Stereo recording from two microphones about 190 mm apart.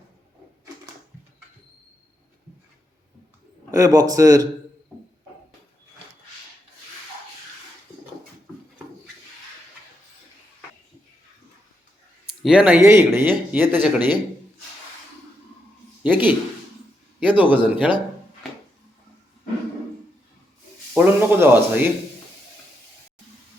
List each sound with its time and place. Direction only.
3.7 s a man's voice: 20° right (ahead or behind)
12.2 s speech: 5° right (ahead or behind)
16.0 s speech: 10° right (ahead or behind)
20.9 s speech: 10° right (ahead or behind)